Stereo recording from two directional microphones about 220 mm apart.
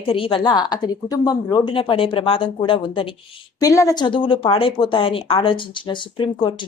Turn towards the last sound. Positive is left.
turn(degrees=20)  # may be behind; listen again after turning